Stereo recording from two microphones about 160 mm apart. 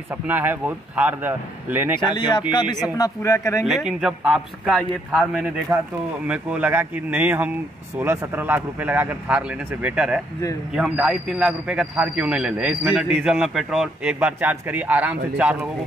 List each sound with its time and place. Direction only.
0.3 s a man's voice: 10° right (ahead or behind)
2.1 s speech: 30° left (ahead or behind)
3.6 s a man's voice: centre (ahead or behind)